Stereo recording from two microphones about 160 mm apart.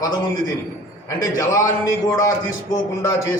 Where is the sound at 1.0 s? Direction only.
20° left (ahead or behind).